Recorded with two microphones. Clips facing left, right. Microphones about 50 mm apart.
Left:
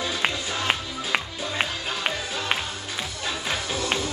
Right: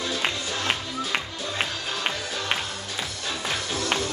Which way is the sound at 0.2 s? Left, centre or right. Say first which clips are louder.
Left 1 dB; centre.